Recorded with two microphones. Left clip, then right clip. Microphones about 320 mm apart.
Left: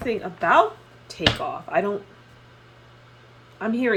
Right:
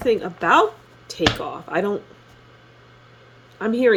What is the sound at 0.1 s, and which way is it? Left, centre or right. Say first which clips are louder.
Speech: right 3 dB; right.